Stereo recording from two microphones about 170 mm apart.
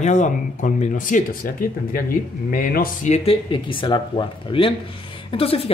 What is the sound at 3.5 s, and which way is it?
Speech, 30° left (ahead or behind).